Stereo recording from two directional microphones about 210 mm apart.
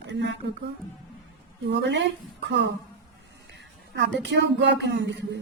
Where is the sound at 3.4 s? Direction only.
55° right (ahead or behind).